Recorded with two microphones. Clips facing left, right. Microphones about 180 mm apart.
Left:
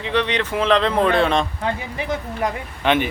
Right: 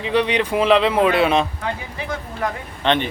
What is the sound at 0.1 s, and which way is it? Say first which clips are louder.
Speech: right 3 dB; 10° right (ahead or behind).